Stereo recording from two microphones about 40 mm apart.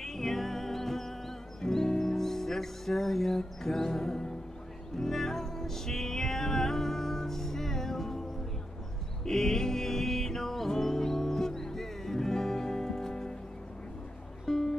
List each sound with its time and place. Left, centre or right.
0.0 s music: centre
9.2 s music: centre
14.4 s music: centre